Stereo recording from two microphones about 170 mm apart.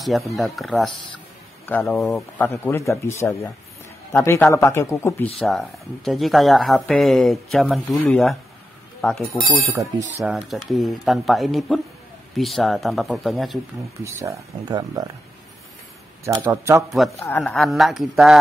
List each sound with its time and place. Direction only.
0.0 s a woman's voice: centre (ahead or behind)
1.7 s speech: 10° left (ahead or behind)
5.4 s a woman's voice: centre (ahead or behind)
9.5 s speech: 15° right (ahead or behind)
10.2 s a woman's voice: centre (ahead or behind)
14.0 s speech: 15° right (ahead or behind)
16.4 s speech: 15° right (ahead or behind)
17.2 s speech: 15° left (ahead or behind)
17.6 s a woman's voice: centre (ahead or behind)